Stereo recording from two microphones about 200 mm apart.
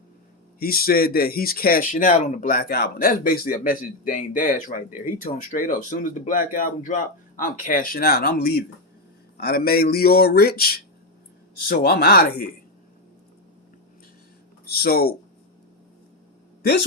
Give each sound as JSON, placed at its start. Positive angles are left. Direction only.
{"t": 0.6, "sound": "speech", "side_deg": 50}
{"t": 14.8, "sound": "speech", "side_deg": 50}